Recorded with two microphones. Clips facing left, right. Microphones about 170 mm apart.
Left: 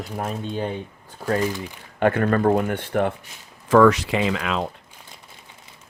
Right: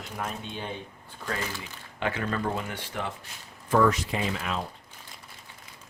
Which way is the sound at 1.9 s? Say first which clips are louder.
Left 10 dB; 55° left (ahead or behind).